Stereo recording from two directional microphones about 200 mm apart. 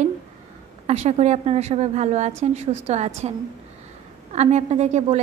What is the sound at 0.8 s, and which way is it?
Speech, 35° right (ahead or behind).